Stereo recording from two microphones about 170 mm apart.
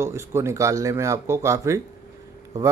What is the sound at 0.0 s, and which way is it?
Speech, 15° right (ahead or behind).